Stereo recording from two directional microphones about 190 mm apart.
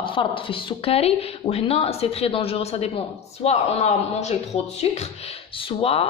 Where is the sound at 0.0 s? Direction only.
25° left (ahead or behind).